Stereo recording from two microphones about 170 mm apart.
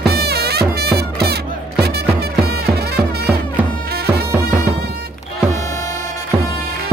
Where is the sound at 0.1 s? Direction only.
70° right (ahead or behind).